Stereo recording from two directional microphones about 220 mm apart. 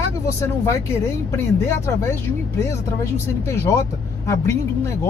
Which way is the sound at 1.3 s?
10° left (ahead or behind).